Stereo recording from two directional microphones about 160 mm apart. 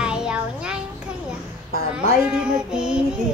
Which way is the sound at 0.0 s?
5° right (ahead or behind).